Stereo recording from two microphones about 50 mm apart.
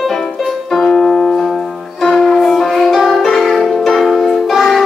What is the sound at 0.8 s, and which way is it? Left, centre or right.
Piano, centre.